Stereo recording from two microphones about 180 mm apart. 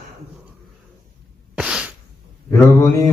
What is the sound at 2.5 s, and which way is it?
Speech, 15° left (ahead or behind).